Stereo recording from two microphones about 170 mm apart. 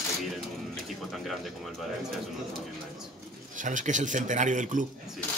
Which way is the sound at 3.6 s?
50° right (ahead or behind).